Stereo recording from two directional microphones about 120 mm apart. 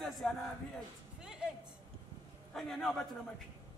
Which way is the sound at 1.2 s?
5° right (ahead or behind).